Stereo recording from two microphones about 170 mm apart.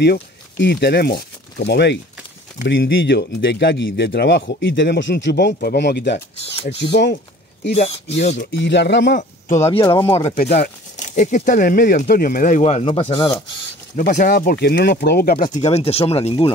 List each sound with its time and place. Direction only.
0.0 s speech: 90° left
7.7 s speech: 35° left (ahead or behind)
8.4 s speech: 90° left
9.8 s speech: 15° left (ahead or behind)
10.3 s speech: 65° left (ahead or behind)
11.0 s speech: 45° left (ahead or behind)
12.8 s speech: 30° left (ahead or behind)
13.9 s speech: 50° left (ahead or behind); by 15.3 s 65° left (ahead or behind)
15.3 s speech: 50° left (ahead or behind)